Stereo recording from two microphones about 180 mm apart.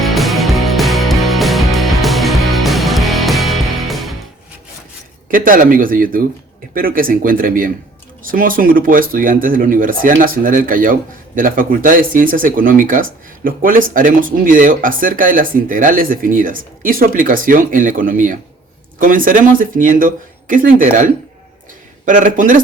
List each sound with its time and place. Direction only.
0.0 s music: centre (ahead or behind)
5.3 s speech: 50° right (ahead or behind)